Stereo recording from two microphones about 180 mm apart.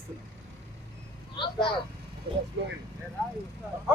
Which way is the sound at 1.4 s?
30° left (ahead or behind).